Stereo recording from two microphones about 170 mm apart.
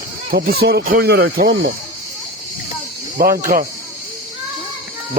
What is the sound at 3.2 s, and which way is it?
Speech, 55° right (ahead or behind).